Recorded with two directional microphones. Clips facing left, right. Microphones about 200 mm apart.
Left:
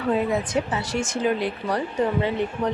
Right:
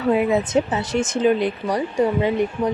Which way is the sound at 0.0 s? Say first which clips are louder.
Right 4 dB; 10° right (ahead or behind).